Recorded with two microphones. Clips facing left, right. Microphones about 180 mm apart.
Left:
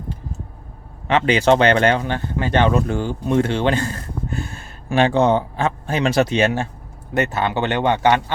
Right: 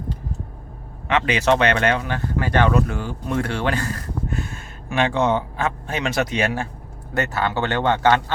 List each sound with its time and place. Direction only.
1.0 s speech: 30° left (ahead or behind); by 8.2 s 15° left (ahead or behind)